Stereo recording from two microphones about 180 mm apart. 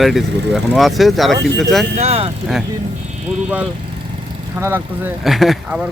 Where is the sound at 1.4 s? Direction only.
75° right (ahead or behind).